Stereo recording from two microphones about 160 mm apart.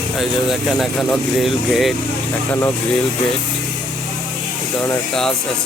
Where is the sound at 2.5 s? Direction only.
15° left (ahead or behind).